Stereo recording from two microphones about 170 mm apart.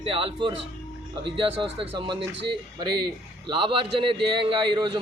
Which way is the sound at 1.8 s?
30° right (ahead or behind).